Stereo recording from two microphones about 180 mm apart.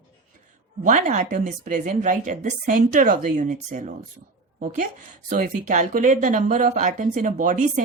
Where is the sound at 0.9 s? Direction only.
45° right (ahead or behind).